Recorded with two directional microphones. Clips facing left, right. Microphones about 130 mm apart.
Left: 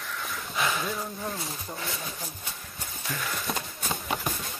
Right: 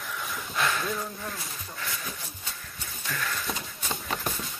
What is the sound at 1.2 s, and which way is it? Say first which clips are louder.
Speech: left 3 dB; 25° left (ahead or behind).